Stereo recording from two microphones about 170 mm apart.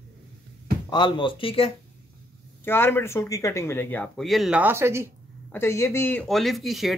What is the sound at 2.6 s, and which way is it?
Speech, 15° left (ahead or behind).